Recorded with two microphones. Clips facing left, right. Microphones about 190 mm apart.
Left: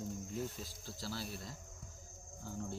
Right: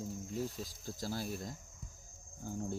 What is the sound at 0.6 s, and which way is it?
Speech, 45° right (ahead or behind).